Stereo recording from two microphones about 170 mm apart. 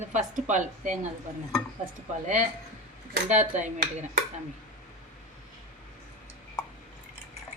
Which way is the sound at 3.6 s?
50° right (ahead or behind).